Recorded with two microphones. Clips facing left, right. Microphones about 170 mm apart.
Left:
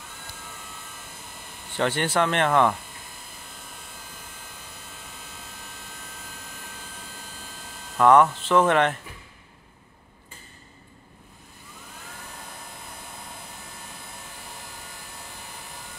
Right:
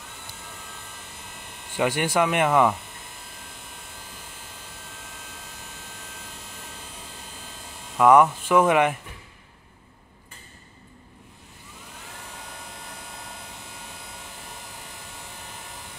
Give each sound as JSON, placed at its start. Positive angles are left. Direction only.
{"t": 1.7, "sound": "speech", "side_deg": -10}
{"t": 8.0, "sound": "speech", "side_deg": -10}